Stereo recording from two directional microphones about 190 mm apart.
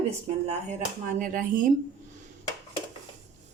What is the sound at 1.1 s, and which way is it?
Speech, 45° right (ahead or behind).